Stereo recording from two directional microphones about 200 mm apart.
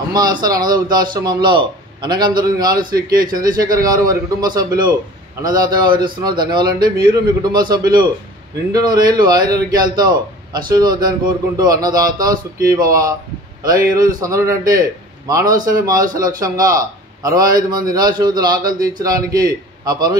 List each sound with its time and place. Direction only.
0.1 s a man's voice: 20° right (ahead or behind)